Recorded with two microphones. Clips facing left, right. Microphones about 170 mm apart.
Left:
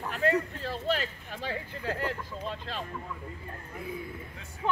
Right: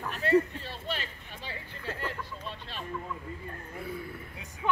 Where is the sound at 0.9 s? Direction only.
90° left.